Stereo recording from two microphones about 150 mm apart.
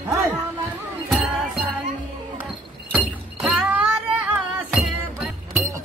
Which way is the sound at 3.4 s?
10° right (ahead or behind).